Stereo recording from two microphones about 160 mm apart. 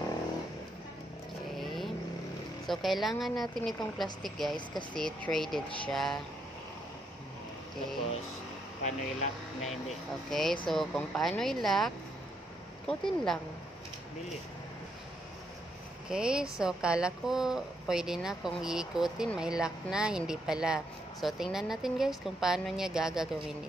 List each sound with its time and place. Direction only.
1.6 s vehicle: centre (ahead or behind)
2.6 s a woman's voice: centre (ahead or behind)
8.8 s speech: 45° left (ahead or behind)
10.3 s a woman's voice: centre (ahead or behind)
16.1 s a woman's voice: 5° right (ahead or behind)